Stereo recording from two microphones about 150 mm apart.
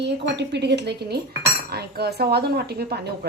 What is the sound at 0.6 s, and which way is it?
Speech, 90° right.